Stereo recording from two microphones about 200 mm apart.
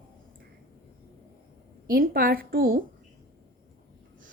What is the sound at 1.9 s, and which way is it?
Speech, 45° right (ahead or behind).